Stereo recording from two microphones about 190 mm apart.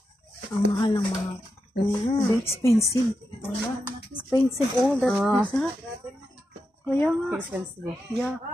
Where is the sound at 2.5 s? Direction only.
15° left (ahead or behind).